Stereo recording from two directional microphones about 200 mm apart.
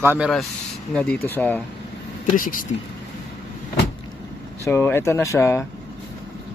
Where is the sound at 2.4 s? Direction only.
45° left (ahead or behind).